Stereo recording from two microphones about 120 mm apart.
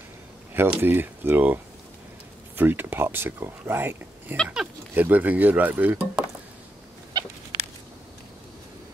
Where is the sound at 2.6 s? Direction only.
15° right (ahead or behind).